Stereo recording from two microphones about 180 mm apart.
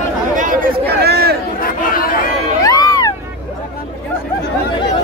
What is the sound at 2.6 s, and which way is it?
Music, 20° left (ahead or behind).